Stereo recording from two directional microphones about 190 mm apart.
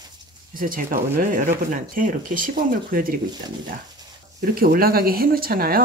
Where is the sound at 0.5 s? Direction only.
45° right (ahead or behind).